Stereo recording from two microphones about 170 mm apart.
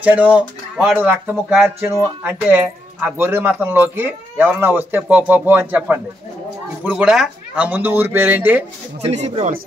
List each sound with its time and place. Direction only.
0.0 s speech: 10° right (ahead or behind)
9.0 s speech: 40° right (ahead or behind)